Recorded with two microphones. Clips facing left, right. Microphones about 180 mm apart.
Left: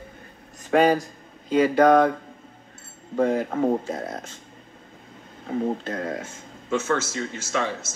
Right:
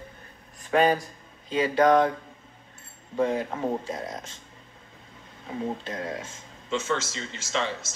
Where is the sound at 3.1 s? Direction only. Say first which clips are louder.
Left 4 dB; 55° left (ahead or behind).